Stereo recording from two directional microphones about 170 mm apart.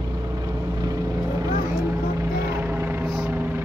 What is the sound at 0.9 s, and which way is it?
Vehicle, 20° right (ahead or behind).